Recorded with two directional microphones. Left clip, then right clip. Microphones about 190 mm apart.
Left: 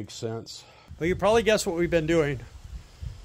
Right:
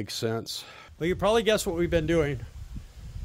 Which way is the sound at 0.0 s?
45° right (ahead or behind).